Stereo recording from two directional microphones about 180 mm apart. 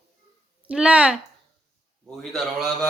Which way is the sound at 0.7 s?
5° right (ahead or behind).